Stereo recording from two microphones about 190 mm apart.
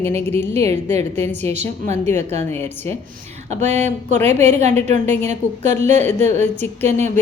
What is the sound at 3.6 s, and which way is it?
A woman's voice, 35° right (ahead or behind).